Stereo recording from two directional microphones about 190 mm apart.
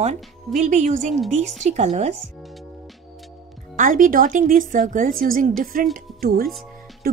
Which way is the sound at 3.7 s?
45° right (ahead or behind).